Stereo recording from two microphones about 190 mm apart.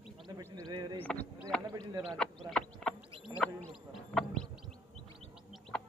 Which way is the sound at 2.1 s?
5° left (ahead or behind).